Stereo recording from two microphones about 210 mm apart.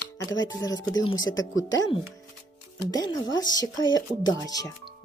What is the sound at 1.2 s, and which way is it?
Speech, 20° left (ahead or behind).